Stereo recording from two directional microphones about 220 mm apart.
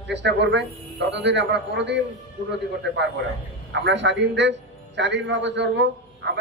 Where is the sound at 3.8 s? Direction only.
55° right (ahead or behind).